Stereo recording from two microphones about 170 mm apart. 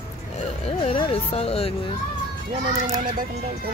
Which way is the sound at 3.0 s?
55° right (ahead or behind).